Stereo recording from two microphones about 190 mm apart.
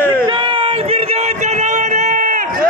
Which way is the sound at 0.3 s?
25° right (ahead or behind).